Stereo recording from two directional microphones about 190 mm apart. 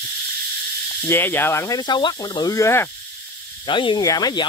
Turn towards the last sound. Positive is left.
turn(degrees=20)  # may be behind; listen again after turning